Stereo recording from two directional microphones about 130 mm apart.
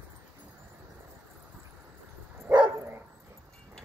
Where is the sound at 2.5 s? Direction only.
10° right (ahead or behind).